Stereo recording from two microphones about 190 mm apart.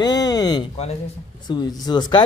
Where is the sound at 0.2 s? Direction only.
20° left (ahead or behind).